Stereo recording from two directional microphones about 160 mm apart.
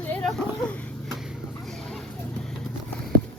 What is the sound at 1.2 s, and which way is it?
Vehicle, centre (ahead or behind).